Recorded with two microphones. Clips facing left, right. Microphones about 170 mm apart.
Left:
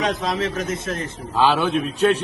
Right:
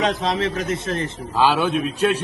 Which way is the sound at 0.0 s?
25° right (ahead or behind).